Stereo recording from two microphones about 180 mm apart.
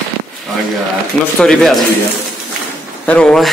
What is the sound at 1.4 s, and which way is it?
Speech, centre (ahead or behind).